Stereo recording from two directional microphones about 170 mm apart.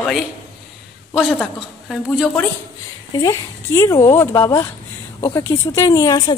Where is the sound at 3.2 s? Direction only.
20° left (ahead or behind).